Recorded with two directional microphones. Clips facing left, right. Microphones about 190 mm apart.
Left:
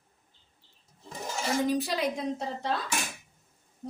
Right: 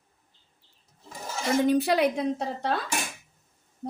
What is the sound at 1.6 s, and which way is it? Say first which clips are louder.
Speech: right 8 dB; 65° right (ahead or behind).